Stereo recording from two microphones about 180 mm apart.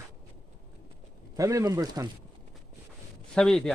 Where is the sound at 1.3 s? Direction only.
20° right (ahead or behind).